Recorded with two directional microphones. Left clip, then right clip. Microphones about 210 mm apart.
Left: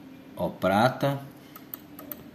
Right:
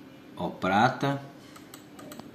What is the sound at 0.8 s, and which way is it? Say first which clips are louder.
Speech: right 2 dB; 20° left (ahead or behind).